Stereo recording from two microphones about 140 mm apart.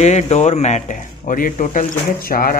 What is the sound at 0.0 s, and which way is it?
Speech, 50° left (ahead or behind).